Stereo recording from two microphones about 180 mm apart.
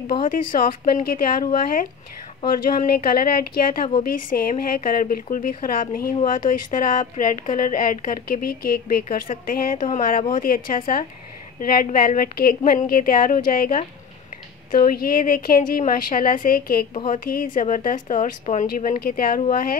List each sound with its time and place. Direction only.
0.2 s speech: 50° left (ahead or behind)
16.9 s speech: 40° left (ahead or behind)